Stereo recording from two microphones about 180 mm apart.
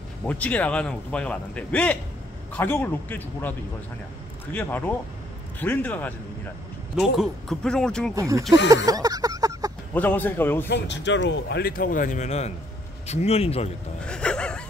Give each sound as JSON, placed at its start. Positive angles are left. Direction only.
{"t": 0.2, "sound": "a man's voice", "side_deg": 10}
{"t": 8.1, "sound": "speech", "side_deg": -15}
{"t": 8.8, "sound": "a sound", "side_deg": -20}
{"t": 9.9, "sound": "a man's voice", "side_deg": 10}
{"t": 10.7, "sound": "a man's voice", "side_deg": 75}
{"t": 14.0, "sound": "a sound", "side_deg": 5}